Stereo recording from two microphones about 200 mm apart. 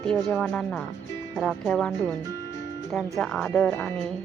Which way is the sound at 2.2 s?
20° right (ahead or behind).